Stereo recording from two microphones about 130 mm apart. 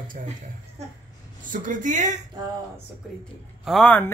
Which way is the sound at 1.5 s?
85° right.